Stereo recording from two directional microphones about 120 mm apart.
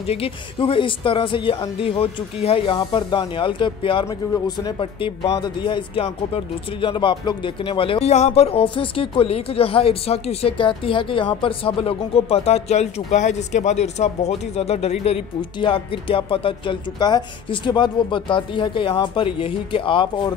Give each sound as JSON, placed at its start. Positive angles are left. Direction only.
{"t": 0.0, "sound": "a woman's voice", "side_deg": 55}
{"t": 4.1, "sound": "a woman's voice", "side_deg": 35}
{"t": 8.1, "sound": "a woman's voice", "side_deg": 65}